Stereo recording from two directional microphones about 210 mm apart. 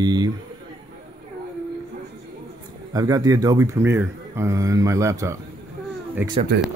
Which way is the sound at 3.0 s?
15° right (ahead or behind).